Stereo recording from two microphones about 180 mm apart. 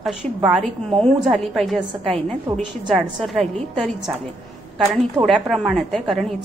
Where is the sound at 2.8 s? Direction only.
5° right (ahead or behind).